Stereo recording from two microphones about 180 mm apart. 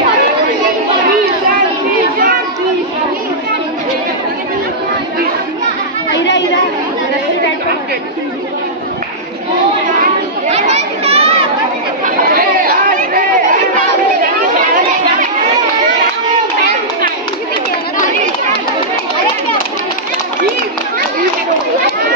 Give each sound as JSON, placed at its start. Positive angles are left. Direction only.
{"t": 6.1, "sound": "chatter", "side_deg": 80}
{"t": 10.5, "sound": "chatter", "side_deg": -35}
{"t": 12.3, "sound": "chatter", "side_deg": -55}